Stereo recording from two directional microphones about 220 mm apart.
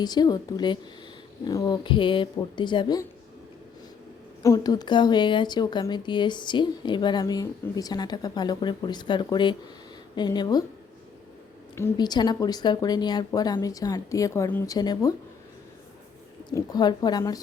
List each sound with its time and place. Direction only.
0.0 s a woman's voice: 20° left (ahead or behind)
4.4 s a woman's voice: 15° left (ahead or behind)
11.7 s a woman's voice: 15° left (ahead or behind)
16.5 s a woman's voice: 20° left (ahead or behind)